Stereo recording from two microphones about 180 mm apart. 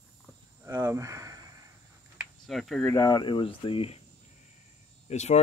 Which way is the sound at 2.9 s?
20° left (ahead or behind).